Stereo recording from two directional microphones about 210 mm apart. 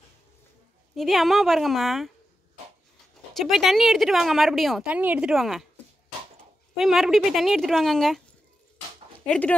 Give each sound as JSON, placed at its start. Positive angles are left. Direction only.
{"t": 0.9, "sound": "a woman's voice", "side_deg": 0}
{"t": 3.3, "sound": "a woman's voice", "side_deg": 0}
{"t": 6.8, "sound": "a woman's voice", "side_deg": 0}